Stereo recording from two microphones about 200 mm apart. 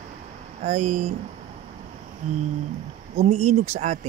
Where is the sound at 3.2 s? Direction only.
30° right (ahead or behind).